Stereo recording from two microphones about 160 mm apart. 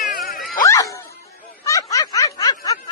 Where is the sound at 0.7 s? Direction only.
20° left (ahead or behind).